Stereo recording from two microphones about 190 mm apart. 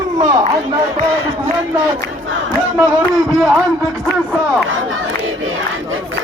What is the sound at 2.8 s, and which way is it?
Speech, centre (ahead or behind).